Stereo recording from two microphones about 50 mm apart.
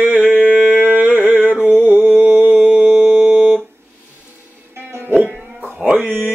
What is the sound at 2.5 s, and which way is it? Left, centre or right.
Music, centre.